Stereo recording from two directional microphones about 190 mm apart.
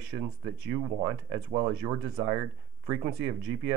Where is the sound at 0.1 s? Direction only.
20° right (ahead or behind).